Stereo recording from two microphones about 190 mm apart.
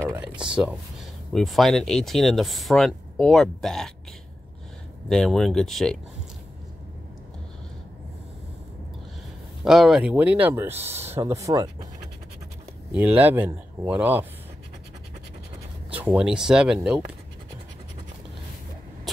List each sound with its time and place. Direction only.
0.0 s a sound: 5° right (ahead or behind)
0.6 s speech: 5° right (ahead or behind)
5.1 s speech: 5° left (ahead or behind)
9.7 s speech: centre (ahead or behind); by 11.9 s 20° right (ahead or behind)
12.9 s speech: 10° right (ahead or behind)
15.9 s speech: 5° right (ahead or behind)
19.1 s vehicle: centre (ahead or behind)